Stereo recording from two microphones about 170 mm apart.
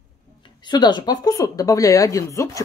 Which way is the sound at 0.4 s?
25° left (ahead or behind).